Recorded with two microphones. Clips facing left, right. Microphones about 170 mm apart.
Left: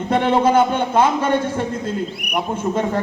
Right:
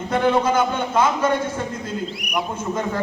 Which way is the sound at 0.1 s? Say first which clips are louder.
Left 3 dB; 30° left (ahead or behind).